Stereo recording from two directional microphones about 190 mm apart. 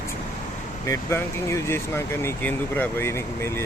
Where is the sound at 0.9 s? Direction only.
15° left (ahead or behind).